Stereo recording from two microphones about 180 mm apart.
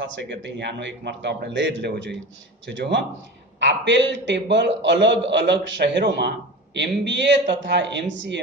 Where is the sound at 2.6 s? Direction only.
85° right.